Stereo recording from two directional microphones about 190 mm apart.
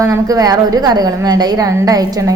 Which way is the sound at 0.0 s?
20° right (ahead or behind).